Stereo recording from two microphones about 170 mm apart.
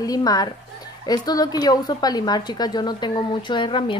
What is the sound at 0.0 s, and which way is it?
A woman's voice, 20° left (ahead or behind).